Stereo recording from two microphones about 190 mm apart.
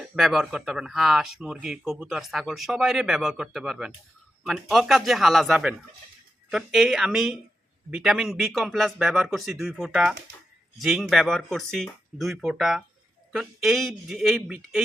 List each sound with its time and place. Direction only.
0.0 s speech: centre (ahead or behind)